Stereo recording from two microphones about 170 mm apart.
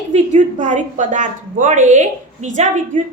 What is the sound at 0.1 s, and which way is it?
A woman's voice, 45° right (ahead or behind).